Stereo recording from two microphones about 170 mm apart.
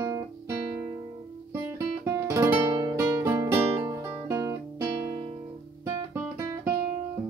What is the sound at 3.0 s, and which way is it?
Guitar, 15° right (ahead or behind).